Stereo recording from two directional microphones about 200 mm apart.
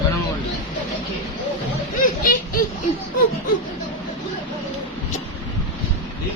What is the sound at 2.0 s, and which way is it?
Speech, 40° left (ahead or behind).